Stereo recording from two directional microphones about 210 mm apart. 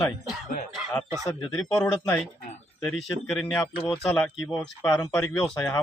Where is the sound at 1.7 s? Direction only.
5° left (ahead or behind).